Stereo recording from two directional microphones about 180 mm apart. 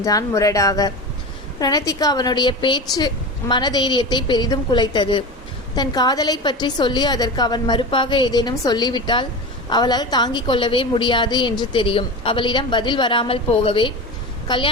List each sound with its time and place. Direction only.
0.0 s a woman's voice: 20° left (ahead or behind)